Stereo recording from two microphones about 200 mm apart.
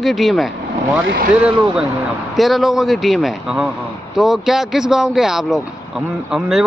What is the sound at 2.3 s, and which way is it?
Speech, centre (ahead or behind).